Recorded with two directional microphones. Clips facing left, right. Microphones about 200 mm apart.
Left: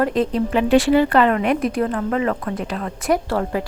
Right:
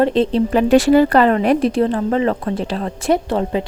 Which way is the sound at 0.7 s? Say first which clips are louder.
Right 3 dB; 40° right (ahead or behind).